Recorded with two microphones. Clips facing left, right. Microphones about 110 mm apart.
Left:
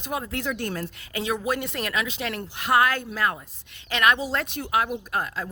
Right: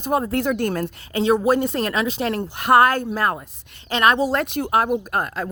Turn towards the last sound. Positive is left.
turn(degrees=-50)  # may be behind; listen again after turning